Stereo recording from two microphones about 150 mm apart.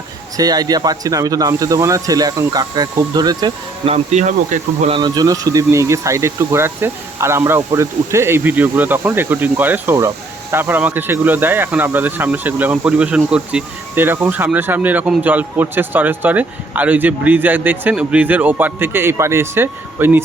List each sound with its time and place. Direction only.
0.3 s speech: 25° right (ahead or behind)
3.8 s speech: 45° right (ahead or behind)
4.9 s speech: 30° right (ahead or behind); by 20.2 s 15° right (ahead or behind)